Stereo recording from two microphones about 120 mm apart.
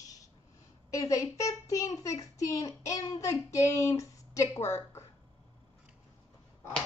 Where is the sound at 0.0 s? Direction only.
30° left (ahead or behind).